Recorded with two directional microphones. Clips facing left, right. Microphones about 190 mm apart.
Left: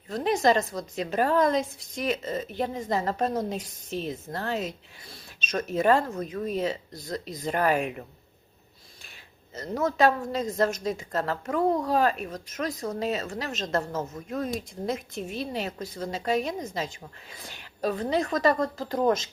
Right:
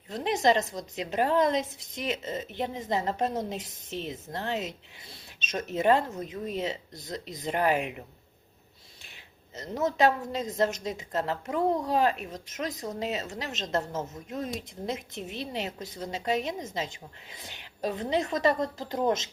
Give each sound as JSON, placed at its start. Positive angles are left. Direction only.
{"t": 0.1, "sound": "speech", "side_deg": -20}
{"t": 9.6, "sound": "speech", "side_deg": -20}